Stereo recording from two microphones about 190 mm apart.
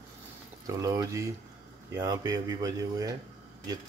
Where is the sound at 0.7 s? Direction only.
15° right (ahead or behind).